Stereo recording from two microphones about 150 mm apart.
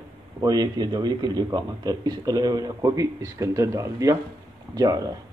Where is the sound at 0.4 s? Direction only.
25° right (ahead or behind).